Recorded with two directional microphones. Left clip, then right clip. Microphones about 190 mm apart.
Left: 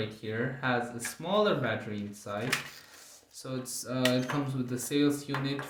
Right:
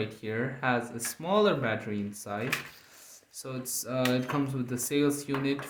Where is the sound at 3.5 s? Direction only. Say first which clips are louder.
Right 1 dB; 45° right (ahead or behind).